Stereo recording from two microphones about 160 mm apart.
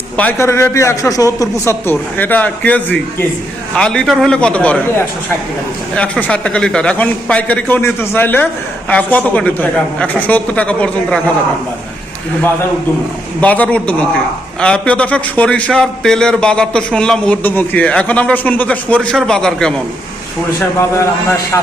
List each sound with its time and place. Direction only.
0.2 s a man's voice: 10° left (ahead or behind)
5.9 s a man's voice: 10° left (ahead or behind)
13.4 s a man's voice: 10° left (ahead or behind)
21.0 s a man's voice: 15° left (ahead or behind)